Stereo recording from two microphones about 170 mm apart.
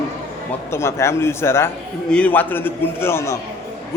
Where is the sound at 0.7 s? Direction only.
15° left (ahead or behind).